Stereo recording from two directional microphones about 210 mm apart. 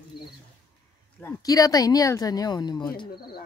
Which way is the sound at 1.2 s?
15° left (ahead or behind).